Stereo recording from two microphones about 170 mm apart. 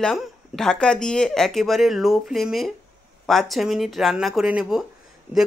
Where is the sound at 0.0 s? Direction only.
5° left (ahead or behind).